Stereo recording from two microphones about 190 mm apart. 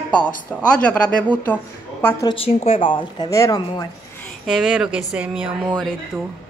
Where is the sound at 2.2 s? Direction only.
30° left (ahead or behind).